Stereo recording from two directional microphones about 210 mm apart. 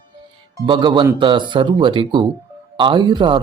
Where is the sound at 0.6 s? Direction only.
20° right (ahead or behind).